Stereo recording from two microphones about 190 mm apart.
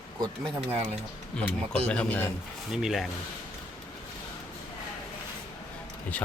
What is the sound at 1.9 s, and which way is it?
Speech, 5° left (ahead or behind).